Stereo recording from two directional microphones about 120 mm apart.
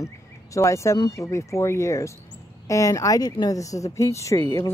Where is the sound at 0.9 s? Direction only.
35° left (ahead or behind).